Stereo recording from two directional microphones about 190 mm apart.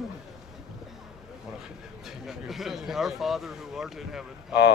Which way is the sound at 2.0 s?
Centre (ahead or behind).